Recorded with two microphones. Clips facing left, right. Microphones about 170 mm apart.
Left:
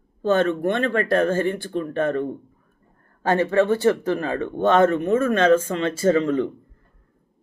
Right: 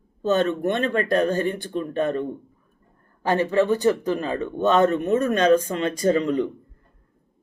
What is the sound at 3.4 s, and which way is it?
Speech, 15° right (ahead or behind).